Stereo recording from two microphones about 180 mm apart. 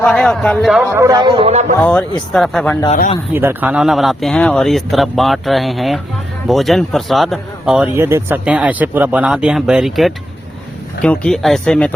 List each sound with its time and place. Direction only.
0.1 s speech: 5° left (ahead or behind)
0.9 s a man's voice: 15° right (ahead or behind)
1.4 s speech: 35° right (ahead or behind)
1.8 s speech: 5° left (ahead or behind)
3.3 s speech: 10° right (ahead or behind); by 11.9 s 5° left (ahead or behind)